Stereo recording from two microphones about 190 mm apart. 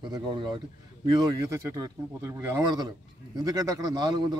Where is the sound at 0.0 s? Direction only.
25° right (ahead or behind).